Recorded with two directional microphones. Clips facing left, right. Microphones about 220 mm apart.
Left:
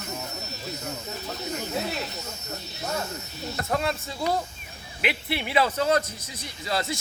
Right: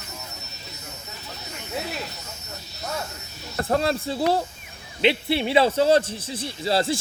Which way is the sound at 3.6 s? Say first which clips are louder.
Right 5 dB; 35° right (ahead or behind).